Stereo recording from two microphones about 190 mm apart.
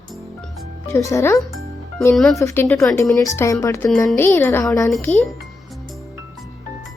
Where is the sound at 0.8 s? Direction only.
15° left (ahead or behind).